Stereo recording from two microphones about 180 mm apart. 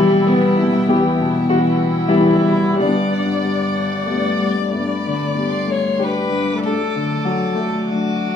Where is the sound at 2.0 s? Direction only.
35° left (ahead or behind).